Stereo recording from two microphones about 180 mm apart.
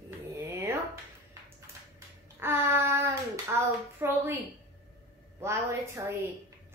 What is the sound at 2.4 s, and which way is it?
Speech, 15° right (ahead or behind).